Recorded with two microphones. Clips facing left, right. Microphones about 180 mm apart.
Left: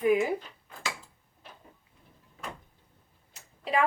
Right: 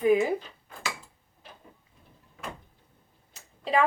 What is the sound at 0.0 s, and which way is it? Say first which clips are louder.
Cutlery: right 2 dB; 25° right (ahead or behind).